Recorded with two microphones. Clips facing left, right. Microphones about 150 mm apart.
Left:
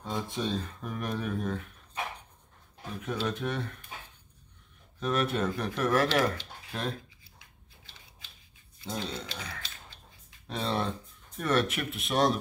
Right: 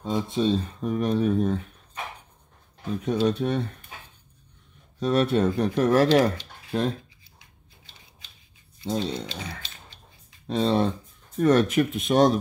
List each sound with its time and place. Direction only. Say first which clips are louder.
0.0 s speech: right 8 dB; 20° right (ahead or behind)
3.0 s speech: right 9 dB; 30° right (ahead or behind)
5.0 s speech: right 7 dB; 30° right (ahead or behind)
8.8 s speech: right 8 dB; 30° right (ahead or behind)
11.3 s speech: right 9 dB; 40° right (ahead or behind)